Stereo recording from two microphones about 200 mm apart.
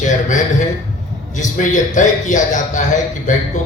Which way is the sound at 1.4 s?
40° left (ahead or behind).